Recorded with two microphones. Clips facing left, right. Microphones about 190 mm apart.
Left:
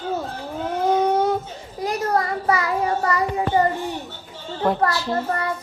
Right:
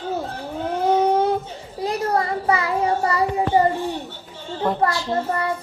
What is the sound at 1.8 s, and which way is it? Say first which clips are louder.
Child singing: even; 25° right (ahead or behind).